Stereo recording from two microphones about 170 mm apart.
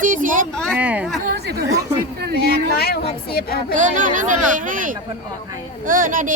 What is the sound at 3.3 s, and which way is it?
Speech, 60° left (ahead or behind).